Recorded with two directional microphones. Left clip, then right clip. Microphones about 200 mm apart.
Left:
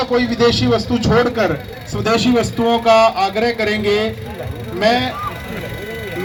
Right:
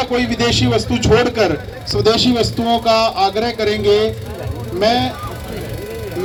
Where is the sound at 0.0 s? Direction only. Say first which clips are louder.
Left 2 dB; 15° left (ahead or behind).